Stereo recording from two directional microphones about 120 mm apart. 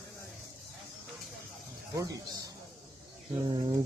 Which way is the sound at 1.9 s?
30° right (ahead or behind).